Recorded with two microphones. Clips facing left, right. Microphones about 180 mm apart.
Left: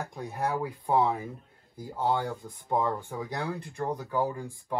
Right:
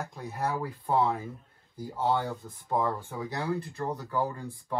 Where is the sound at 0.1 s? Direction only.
15° left (ahead or behind).